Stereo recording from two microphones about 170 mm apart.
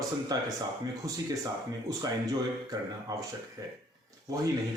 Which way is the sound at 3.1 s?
20° right (ahead or behind).